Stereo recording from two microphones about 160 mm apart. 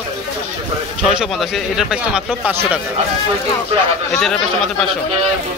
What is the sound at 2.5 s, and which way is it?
Speech, 15° right (ahead or behind).